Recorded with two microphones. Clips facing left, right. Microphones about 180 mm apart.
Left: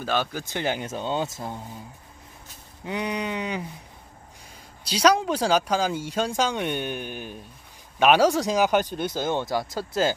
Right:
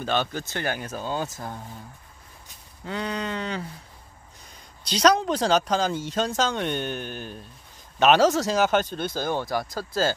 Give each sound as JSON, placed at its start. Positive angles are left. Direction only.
{"t": 0.0, "sound": "speech", "side_deg": 5}
{"t": 2.8, "sound": "speech", "side_deg": 15}
{"t": 4.8, "sound": "speech", "side_deg": 10}